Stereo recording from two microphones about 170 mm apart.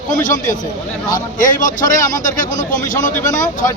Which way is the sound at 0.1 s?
50° left (ahead or behind).